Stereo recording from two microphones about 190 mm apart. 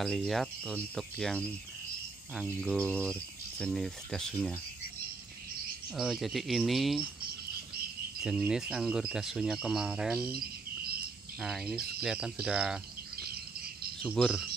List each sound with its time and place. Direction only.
0.0 s speech: centre (ahead or behind)
5.9 s speech: centre (ahead or behind)
8.2 s speech: 5° right (ahead or behind)
10.3 s cricket: 55° right (ahead or behind)
11.4 s speech: 5° right (ahead or behind)
14.0 s speech: centre (ahead or behind)